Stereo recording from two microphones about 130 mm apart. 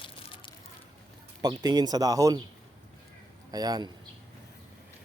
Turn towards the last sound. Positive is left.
turn(degrees=-30)  # may be behind; listen again after turning